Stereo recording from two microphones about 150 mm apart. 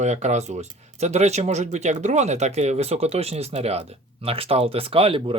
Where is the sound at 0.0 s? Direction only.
50° right (ahead or behind).